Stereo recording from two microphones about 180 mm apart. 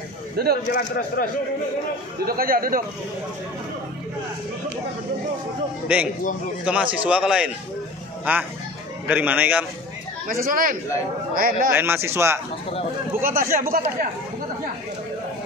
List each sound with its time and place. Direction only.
0.4 s a man's voice: 60° right (ahead or behind)
0.7 s speech: 55° left (ahead or behind)
2.2 s a man's voice: 55° right (ahead or behind)
5.9 s a man's voice: 5° right (ahead or behind)
10.2 s a man's voice: 50° right (ahead or behind)
11.7 s a man's voice: 10° right (ahead or behind)
13.2 s a man's voice: 50° right (ahead or behind)